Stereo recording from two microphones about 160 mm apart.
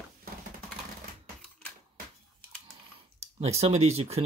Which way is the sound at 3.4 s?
40° right (ahead or behind).